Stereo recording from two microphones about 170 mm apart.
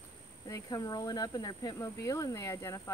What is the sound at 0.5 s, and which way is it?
Speech, 20° left (ahead or behind).